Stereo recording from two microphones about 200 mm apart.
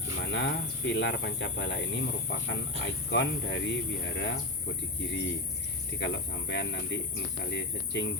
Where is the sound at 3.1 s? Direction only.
65° left (ahead or behind).